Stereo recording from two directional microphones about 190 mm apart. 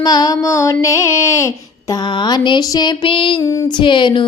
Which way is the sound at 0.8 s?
15° left (ahead or behind).